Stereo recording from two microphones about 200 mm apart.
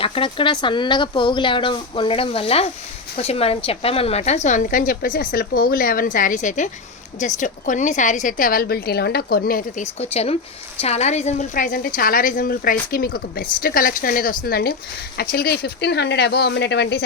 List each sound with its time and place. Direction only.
0.0 s a woman's voice: 25° left (ahead or behind); by 17.0 s 55° left (ahead or behind)